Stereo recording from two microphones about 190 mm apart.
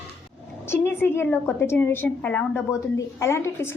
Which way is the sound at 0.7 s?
10° left (ahead or behind).